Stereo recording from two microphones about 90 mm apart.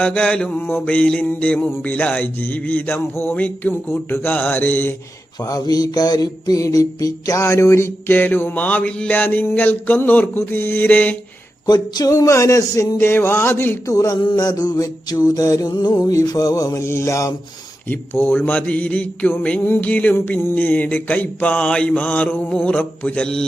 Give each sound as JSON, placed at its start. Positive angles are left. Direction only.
{"t": 0.0, "sound": "a sound", "side_deg": 10}
{"t": 3.3, "sound": "mantra", "side_deg": 20}
{"t": 5.4, "sound": "mantra", "side_deg": 45}
{"t": 11.6, "sound": "a man's voice", "side_deg": 50}
{"t": 13.0, "sound": "mantra", "side_deg": 25}
{"t": 13.9, "sound": "a man's voice", "side_deg": 40}
{"t": 14.3, "sound": "mantra", "side_deg": 45}
{"t": 16.7, "sound": "a man's voice", "side_deg": 30}
{"t": 17.8, "sound": "a sound", "side_deg": 25}